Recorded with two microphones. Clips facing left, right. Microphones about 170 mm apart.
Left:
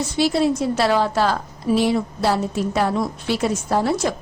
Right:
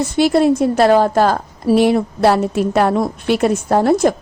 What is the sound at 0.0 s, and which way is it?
A woman's voice, 55° right (ahead or behind).